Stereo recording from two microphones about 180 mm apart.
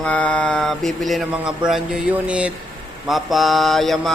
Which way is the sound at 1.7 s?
5° right (ahead or behind).